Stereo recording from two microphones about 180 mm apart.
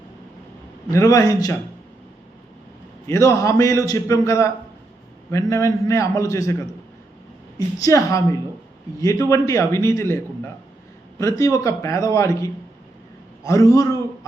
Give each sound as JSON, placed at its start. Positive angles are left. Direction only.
{"t": 0.9, "sound": "a man's voice", "side_deg": 20}
{"t": 3.1, "sound": "a man's voice", "side_deg": 15}
{"t": 7.8, "sound": "a man's voice", "side_deg": 20}